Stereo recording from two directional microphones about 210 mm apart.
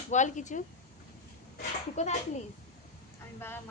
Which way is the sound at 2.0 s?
30° left (ahead or behind).